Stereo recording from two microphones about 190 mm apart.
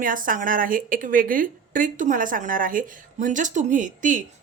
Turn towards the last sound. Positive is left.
turn(degrees=-40)  # may be behind; listen again after turning